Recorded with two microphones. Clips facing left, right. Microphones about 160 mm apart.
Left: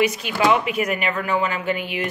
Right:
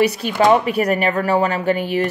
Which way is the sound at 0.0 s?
35° right (ahead or behind).